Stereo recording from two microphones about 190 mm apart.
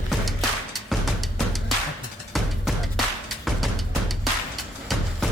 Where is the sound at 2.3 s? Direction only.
Centre (ahead or behind).